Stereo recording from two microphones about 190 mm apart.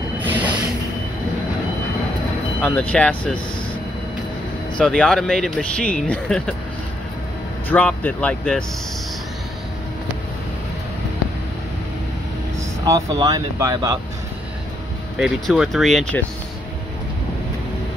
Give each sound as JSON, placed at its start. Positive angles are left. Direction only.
{"t": 2.6, "sound": "speech", "side_deg": 10}
{"t": 4.7, "sound": "speech", "side_deg": 5}
{"t": 7.7, "sound": "speech", "side_deg": 10}
{"t": 12.5, "sound": "speech", "side_deg": -15}
{"t": 15.1, "sound": "speech", "side_deg": -5}